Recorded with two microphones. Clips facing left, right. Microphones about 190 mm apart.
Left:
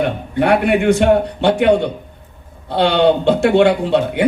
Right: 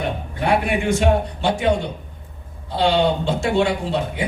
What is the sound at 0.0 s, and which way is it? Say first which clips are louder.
A man's voice: left 7 dB; 65° left (ahead or behind).